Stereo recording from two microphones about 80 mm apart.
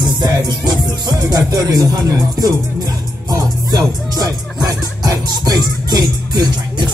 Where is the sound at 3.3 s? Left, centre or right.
Right.